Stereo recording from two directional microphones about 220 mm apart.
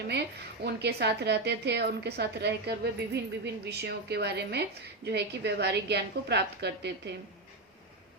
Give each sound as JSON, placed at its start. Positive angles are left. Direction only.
{"t": 0.1, "sound": "a woman's voice", "side_deg": -50}